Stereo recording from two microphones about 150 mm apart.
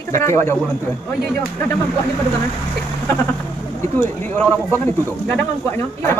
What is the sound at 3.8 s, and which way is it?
Speech, 15° left (ahead or behind).